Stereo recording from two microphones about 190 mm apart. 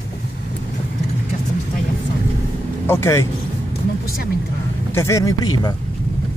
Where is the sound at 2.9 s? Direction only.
15° left (ahead or behind).